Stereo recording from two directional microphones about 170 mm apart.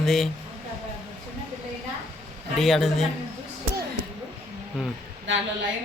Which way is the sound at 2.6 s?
Centre (ahead or behind).